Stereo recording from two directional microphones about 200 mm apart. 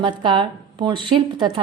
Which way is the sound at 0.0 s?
25° right (ahead or behind).